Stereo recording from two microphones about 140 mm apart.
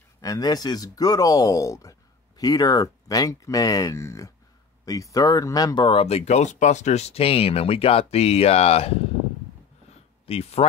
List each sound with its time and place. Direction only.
0.2 s speech: 25° left (ahead or behind); by 9.0 s 45° left (ahead or behind)
10.2 s speech: 45° left (ahead or behind)